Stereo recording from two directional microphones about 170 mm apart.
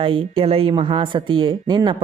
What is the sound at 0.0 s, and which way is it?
Speech, 30° right (ahead or behind).